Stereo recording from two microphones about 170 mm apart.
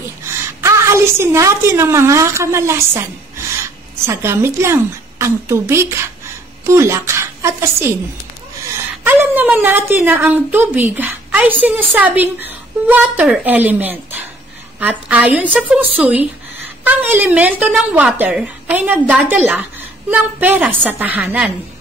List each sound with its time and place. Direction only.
0.6 s a woman's voice: 15° right (ahead or behind)
9.0 s a woman's voice: 10° right (ahead or behind)